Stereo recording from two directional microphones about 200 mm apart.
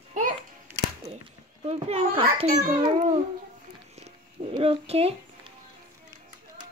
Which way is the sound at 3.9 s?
30° right (ahead or behind).